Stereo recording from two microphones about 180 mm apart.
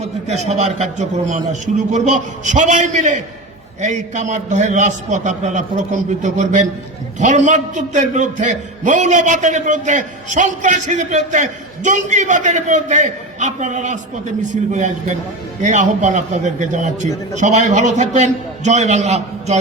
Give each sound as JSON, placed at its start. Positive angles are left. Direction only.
{"t": 0.0, "sound": "a man's voice", "side_deg": -40}